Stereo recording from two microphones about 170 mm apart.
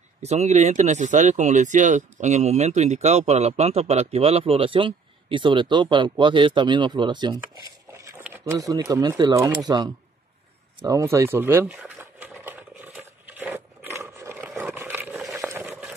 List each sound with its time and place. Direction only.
0.2 s speech: 40° right (ahead or behind)
8.2 s speech: 15° right (ahead or behind)
10.8 s a sound: 20° right (ahead or behind)